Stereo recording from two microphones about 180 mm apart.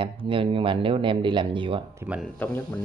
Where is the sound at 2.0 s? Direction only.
5° right (ahead or behind).